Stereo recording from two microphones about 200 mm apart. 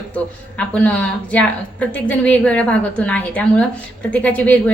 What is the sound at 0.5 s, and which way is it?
A woman's voice, 5° left (ahead or behind).